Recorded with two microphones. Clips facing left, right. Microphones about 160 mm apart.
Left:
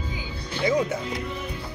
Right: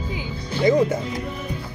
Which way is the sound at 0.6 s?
45° right (ahead or behind).